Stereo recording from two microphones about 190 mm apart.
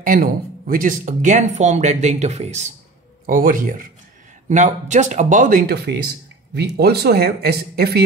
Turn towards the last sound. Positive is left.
turn(degrees=-55)  # may be behind; listen again after turning